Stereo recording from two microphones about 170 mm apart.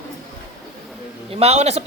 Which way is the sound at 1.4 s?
40° right (ahead or behind).